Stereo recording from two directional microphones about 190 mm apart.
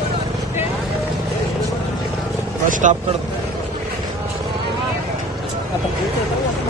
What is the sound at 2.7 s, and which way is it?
Vehicle, 40° right (ahead or behind).